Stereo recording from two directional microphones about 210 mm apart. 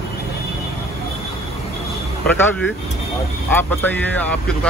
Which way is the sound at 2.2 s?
5° left (ahead or behind).